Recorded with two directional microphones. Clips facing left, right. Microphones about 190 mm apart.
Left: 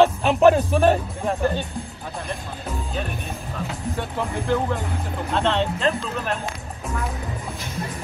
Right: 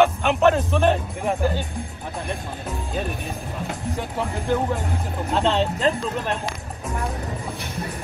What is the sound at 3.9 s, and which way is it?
Speech, 10° right (ahead or behind).